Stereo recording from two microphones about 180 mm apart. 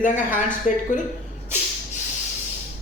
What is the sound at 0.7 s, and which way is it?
Speech, 45° left (ahead or behind).